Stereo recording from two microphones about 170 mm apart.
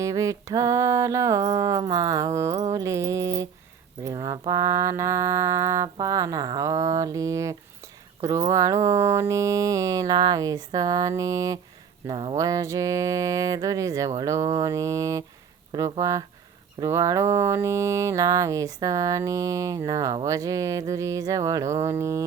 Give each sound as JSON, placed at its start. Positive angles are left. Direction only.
{"t": 0.0, "sound": "mantra", "side_deg": -20}